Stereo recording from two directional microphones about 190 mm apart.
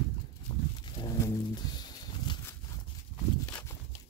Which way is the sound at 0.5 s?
20° left (ahead or behind).